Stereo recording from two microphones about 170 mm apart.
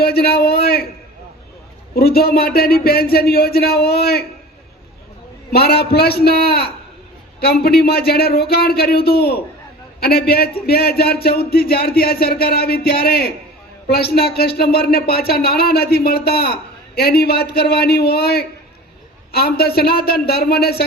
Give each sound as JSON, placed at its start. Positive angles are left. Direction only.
{"t": 0.0, "sound": "speech", "side_deg": 65}
{"t": 2.0, "sound": "speech", "side_deg": 65}
{"t": 5.5, "sound": "speech", "side_deg": 70}